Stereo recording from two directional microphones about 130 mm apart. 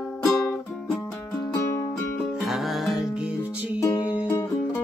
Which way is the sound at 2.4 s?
Centre (ahead or behind).